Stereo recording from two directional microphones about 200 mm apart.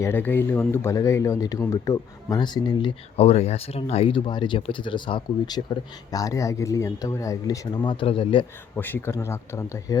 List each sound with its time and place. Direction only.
0.0 s speech: 10° left (ahead or behind); by 8.4 s 25° left (ahead or behind)
8.7 s speech: 10° left (ahead or behind)